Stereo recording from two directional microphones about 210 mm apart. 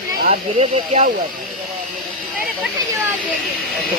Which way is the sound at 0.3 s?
30° right (ahead or behind).